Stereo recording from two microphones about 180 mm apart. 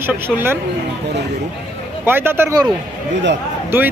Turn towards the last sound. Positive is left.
turn(degrees=-15)  # may be behind; listen again after turning